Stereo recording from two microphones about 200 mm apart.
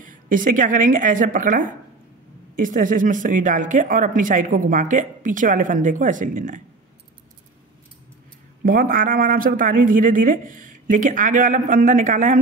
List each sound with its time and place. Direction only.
0.0 s speech: 40° right (ahead or behind)
8.6 s speech: 45° right (ahead or behind)